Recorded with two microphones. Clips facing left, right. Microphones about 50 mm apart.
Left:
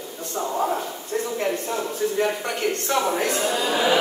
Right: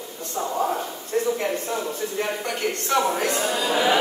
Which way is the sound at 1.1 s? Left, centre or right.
Centre.